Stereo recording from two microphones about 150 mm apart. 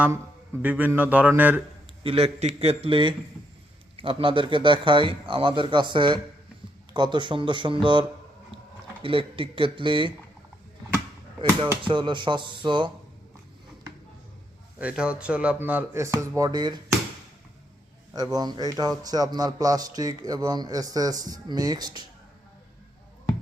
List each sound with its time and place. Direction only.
0.6 s speech: 10° right (ahead or behind)
2.0 s speech: 40° right (ahead or behind)
9.0 s speech: 35° right (ahead or behind)
11.8 s speech: 30° right (ahead or behind)
14.8 s speech: 5° right (ahead or behind); by 16.8 s 30° right (ahead or behind)
18.1 s a man's voice: 25° right (ahead or behind)